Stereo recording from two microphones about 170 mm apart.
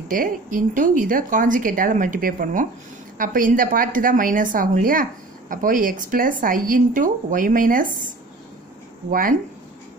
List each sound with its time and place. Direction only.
0.1 s speech: 55° right (ahead or behind)